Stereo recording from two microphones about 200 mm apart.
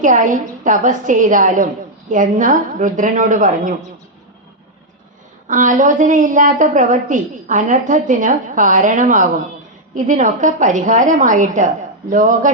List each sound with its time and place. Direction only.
0.0 s a woman's voice: 40° right (ahead or behind)
5.5 s a woman's voice: 40° right (ahead or behind)